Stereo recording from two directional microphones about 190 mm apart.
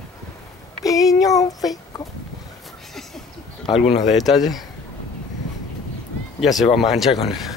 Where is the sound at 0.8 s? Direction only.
20° left (ahead or behind).